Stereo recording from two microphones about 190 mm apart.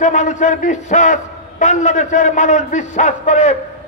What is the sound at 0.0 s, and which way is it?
A man's voice, 40° left (ahead or behind).